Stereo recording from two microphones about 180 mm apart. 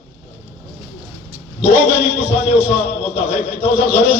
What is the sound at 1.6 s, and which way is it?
A man's voice, 5° right (ahead or behind).